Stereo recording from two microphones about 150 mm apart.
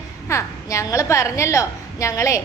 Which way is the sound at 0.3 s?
20° left (ahead or behind).